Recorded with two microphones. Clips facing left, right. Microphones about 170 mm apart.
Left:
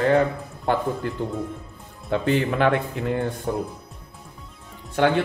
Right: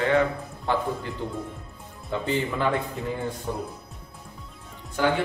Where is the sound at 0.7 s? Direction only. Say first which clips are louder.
Left 3 dB; 50° left (ahead or behind).